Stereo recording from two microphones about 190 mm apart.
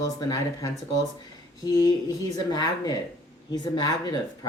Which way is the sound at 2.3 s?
20° left (ahead or behind).